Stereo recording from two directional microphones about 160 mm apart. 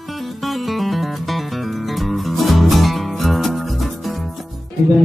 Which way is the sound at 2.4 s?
Centre (ahead or behind).